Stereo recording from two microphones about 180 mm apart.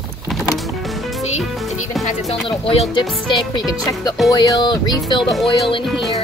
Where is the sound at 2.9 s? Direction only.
25° left (ahead or behind).